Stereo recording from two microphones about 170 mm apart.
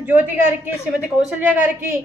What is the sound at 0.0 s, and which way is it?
A woman's voice, 10° right (ahead or behind).